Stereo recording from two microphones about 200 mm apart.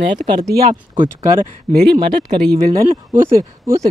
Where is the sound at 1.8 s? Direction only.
55° right (ahead or behind).